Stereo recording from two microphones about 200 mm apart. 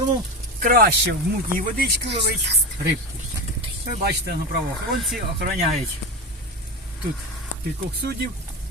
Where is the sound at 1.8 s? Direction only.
60° right (ahead or behind).